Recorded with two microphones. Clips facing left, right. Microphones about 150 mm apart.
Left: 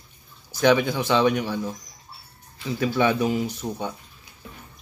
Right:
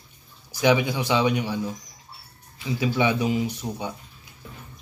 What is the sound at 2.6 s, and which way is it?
Speech, 15° right (ahead or behind).